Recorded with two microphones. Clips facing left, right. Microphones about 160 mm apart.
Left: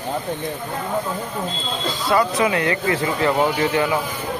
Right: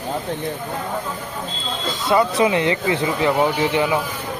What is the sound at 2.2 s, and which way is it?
Speech, 25° right (ahead or behind).